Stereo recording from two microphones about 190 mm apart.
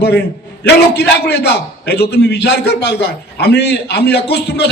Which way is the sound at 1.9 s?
60° left (ahead or behind).